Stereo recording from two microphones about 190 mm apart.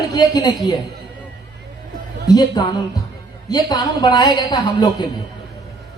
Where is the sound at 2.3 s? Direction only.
20° left (ahead or behind).